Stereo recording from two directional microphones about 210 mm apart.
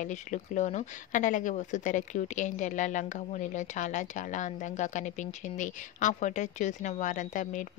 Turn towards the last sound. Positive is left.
turn(degrees=35)  # may be behind; listen again after turning